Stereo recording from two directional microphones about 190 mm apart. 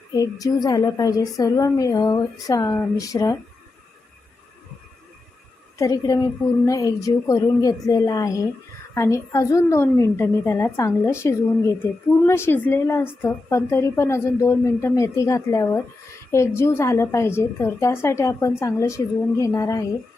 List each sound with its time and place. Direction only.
0.1 s a woman's voice: 20° left (ahead or behind)
5.7 s a woman's voice: 15° left (ahead or behind)